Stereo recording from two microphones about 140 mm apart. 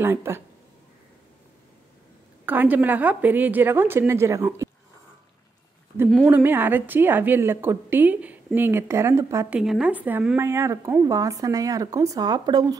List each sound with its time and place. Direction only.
0.0 s a woman's voice: 15° right (ahead or behind)
2.4 s a woman's voice: 10° right (ahead or behind)
6.0 s speech: 5° left (ahead or behind)
6.3 s a woman's voice: 15° right (ahead or behind)
9.5 s speech: 5° right (ahead or behind); by 12.7 s 30° right (ahead or behind)